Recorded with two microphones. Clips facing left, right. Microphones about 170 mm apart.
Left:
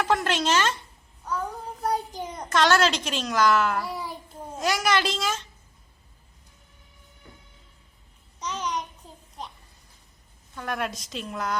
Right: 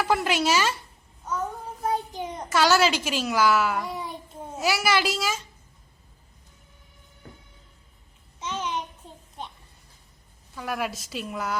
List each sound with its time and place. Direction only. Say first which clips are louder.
0.0 s speech: right 1 dB; 10° right (ahead or behind)
1.2 s babbling: right 1 dB; 5° right (ahead or behind)
1.9 s a child's voice: right 1 dB; 5° right (ahead or behind)
7.2 s music: right 4 dB; 50° right (ahead or behind)
8.4 s a sound: even; 5° right (ahead or behind)
10.5 s a woman's voice: even; 5° right (ahead or behind)